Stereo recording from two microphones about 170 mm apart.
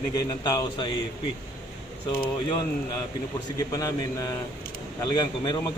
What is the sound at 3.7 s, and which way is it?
A man's voice, 20° left (ahead or behind).